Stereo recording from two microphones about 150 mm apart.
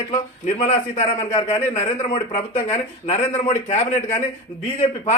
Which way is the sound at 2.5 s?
50° left (ahead or behind).